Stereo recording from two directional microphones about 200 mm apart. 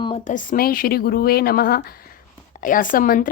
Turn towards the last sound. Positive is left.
turn(degrees=40)  # may be behind; listen again after turning